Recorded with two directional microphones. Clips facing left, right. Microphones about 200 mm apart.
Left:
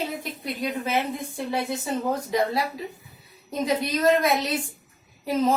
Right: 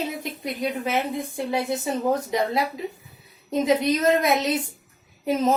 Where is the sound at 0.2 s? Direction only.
20° right (ahead or behind).